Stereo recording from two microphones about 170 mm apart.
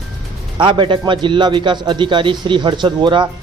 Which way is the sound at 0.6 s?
30° right (ahead or behind).